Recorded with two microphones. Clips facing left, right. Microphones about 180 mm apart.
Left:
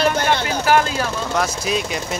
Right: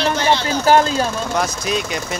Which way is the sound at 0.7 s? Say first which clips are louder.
Right 3 dB; 30° right (ahead or behind).